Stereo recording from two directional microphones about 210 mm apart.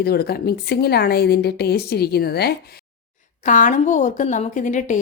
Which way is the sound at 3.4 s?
35° left (ahead or behind).